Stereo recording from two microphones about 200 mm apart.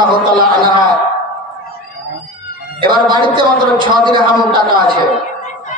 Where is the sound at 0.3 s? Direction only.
20° right (ahead or behind).